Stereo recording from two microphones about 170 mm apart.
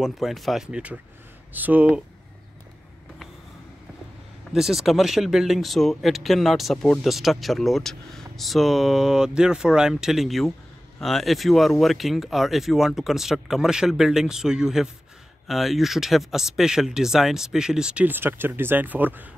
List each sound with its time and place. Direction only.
0.0 s speech: centre (ahead or behind)
4.5 s speech: centre (ahead or behind)